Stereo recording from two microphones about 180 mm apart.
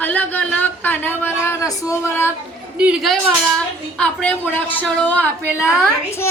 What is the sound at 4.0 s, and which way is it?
Female singing, 5° left (ahead or behind).